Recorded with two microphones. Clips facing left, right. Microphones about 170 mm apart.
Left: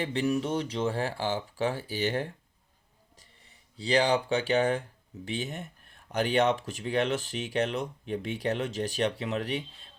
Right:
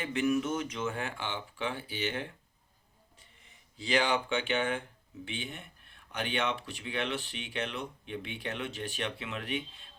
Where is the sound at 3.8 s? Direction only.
35° left (ahead or behind).